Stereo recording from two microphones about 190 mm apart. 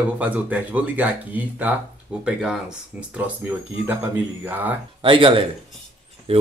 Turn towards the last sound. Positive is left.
turn(degrees=-30)  # may be behind; listen again after turning